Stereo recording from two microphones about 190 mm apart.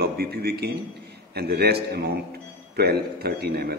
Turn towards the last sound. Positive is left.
turn(degrees=-55)  # may be behind; listen again after turning